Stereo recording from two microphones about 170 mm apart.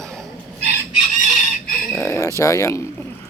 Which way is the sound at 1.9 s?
20° left (ahead or behind).